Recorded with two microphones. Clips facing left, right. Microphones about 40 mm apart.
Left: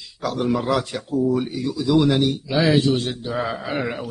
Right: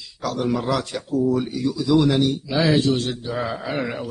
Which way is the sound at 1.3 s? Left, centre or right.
Centre.